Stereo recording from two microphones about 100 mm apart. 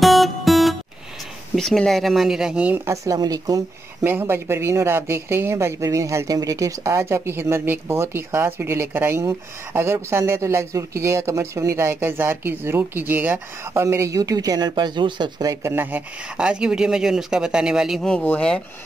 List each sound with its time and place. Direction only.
0.0 s music: centre (ahead or behind)
1.5 s speech: 5° left (ahead or behind); by 2.8 s 10° right (ahead or behind)
2.9 s speech: 35° right (ahead or behind)
4.0 s speech: 20° right (ahead or behind); by 15.4 s 50° right (ahead or behind)
15.4 s speech: 25° right (ahead or behind)
16.3 s speech: 10° right (ahead or behind)
18.0 s speech: 15° left (ahead or behind)